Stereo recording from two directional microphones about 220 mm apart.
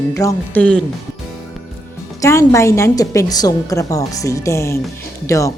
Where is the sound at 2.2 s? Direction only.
15° left (ahead or behind).